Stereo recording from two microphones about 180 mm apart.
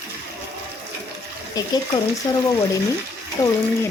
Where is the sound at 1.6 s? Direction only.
20° left (ahead or behind).